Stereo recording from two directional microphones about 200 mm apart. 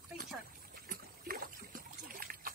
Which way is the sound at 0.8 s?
45° right (ahead or behind).